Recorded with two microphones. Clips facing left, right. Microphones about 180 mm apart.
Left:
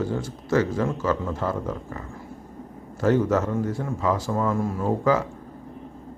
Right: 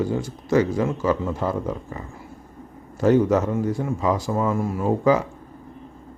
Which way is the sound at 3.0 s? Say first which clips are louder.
Right 3 dB; 15° right (ahead or behind).